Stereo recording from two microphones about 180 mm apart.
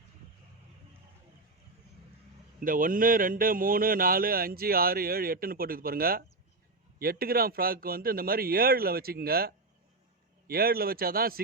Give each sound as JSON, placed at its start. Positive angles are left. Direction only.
{"t": 2.6, "sound": "speech", "side_deg": -50}